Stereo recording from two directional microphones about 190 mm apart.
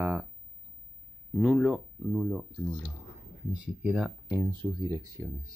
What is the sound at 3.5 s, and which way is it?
Speech, 5° right (ahead or behind).